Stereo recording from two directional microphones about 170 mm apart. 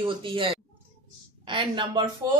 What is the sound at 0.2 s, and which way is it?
Speech, 30° right (ahead or behind).